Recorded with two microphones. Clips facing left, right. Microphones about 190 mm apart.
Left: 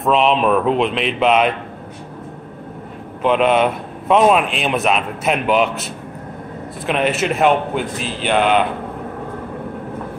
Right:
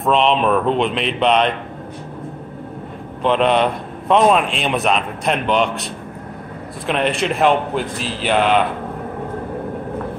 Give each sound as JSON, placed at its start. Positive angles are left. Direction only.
{"t": 0.0, "sound": "a man's voice", "side_deg": 0}
{"t": 3.2, "sound": "a man's voice", "side_deg": 5}
{"t": 6.9, "sound": "a man's voice", "side_deg": 5}